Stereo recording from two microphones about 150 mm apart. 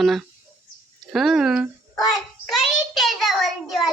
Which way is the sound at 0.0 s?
Centre (ahead or behind).